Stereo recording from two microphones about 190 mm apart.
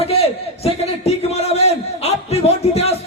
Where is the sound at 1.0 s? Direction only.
35° left (ahead or behind).